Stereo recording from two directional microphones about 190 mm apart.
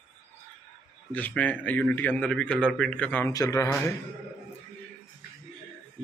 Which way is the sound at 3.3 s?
20° left (ahead or behind).